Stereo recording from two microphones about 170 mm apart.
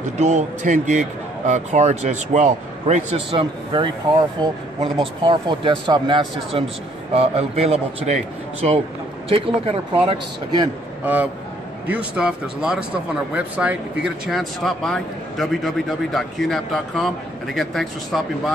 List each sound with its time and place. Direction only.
0.2 s a man's voice: 40° right (ahead or behind)
3.3 s a man's voice: 30° right (ahead or behind)
11.9 s speech: 5° right (ahead or behind)